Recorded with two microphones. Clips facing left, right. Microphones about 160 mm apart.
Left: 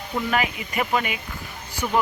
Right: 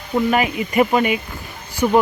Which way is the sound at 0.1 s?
15° right (ahead or behind).